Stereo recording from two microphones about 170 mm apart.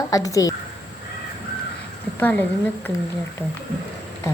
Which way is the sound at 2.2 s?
10° left (ahead or behind).